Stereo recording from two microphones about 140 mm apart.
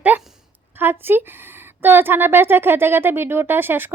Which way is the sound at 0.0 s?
5° right (ahead or behind).